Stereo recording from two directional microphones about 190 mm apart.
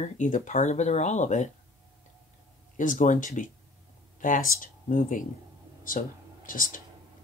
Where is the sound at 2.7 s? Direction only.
45° left (ahead or behind).